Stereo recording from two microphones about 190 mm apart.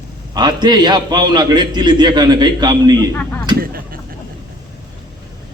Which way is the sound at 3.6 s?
50° right (ahead or behind).